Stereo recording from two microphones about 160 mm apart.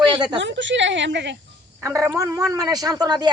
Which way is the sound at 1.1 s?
90° right.